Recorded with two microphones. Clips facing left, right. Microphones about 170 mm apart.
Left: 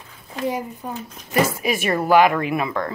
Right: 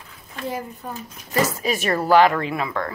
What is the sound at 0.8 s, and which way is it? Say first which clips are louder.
Speech: left 3 dB; 15° left (ahead or behind).